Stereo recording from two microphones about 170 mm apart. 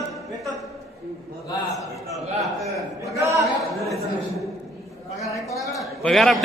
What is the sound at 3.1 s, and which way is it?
Speech, 15° right (ahead or behind).